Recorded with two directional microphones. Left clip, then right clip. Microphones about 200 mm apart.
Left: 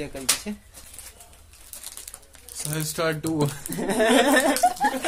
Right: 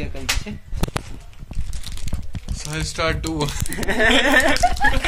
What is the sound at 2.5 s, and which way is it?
Speech, 50° left (ahead or behind).